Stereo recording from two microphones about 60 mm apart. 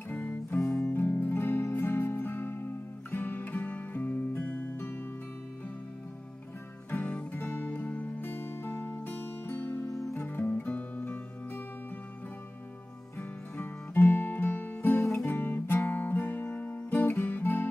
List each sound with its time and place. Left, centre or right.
0.1 s music: left
7.3 s music: left
9.8 s music: left
10.1 s music: left
13.6 s music: left